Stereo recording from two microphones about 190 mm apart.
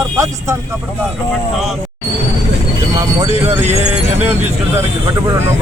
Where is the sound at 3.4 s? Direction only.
15° right (ahead or behind).